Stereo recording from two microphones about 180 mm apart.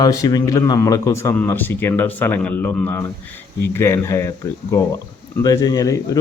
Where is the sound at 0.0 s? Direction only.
20° left (ahead or behind).